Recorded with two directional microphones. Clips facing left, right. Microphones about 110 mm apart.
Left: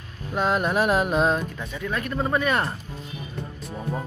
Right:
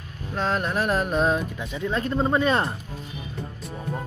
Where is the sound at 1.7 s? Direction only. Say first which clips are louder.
Right 5 dB; 25° right (ahead or behind).